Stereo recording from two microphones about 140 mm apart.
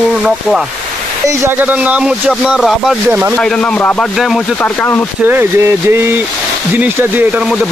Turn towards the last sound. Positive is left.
turn(degrees=-15)  # may be behind; listen again after turning